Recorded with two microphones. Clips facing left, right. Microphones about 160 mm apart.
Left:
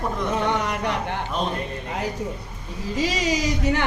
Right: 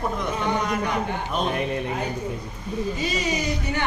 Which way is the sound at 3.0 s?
90° left.